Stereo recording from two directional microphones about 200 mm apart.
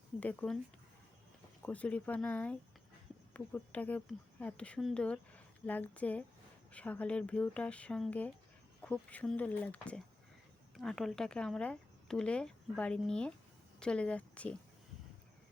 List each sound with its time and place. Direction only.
0.2 s speech: 10° left (ahead or behind)
1.6 s speech: 5° left (ahead or behind)